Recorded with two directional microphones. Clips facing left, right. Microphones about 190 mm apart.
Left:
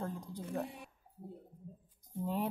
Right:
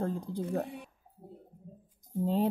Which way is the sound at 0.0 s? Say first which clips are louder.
Right 8 dB; 35° right (ahead or behind).